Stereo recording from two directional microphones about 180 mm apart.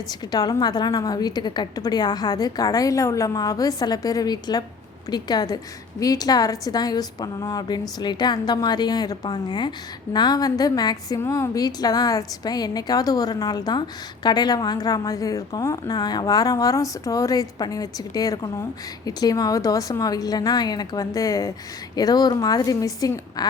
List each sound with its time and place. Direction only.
0.1 s a woman's voice: 20° left (ahead or behind)